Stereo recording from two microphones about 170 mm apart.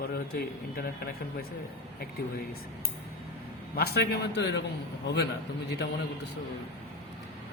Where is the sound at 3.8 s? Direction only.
70° left (ahead or behind).